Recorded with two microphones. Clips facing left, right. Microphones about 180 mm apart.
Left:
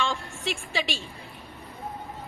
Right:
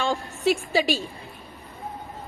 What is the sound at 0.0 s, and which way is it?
A woman's voice, 40° right (ahead or behind).